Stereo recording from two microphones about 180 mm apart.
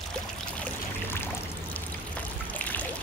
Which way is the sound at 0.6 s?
10° left (ahead or behind).